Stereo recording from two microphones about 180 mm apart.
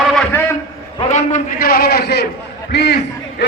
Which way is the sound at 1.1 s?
40° left (ahead or behind).